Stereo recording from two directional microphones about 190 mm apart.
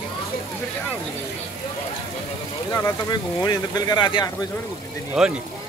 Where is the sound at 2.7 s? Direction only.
15° left (ahead or behind).